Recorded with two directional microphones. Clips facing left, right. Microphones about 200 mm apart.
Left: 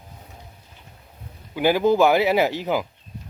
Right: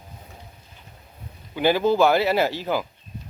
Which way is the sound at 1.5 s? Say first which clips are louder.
Left 1 dB; 10° left (ahead or behind).